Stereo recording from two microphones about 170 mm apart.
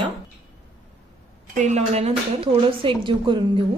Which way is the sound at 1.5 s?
45° right (ahead or behind).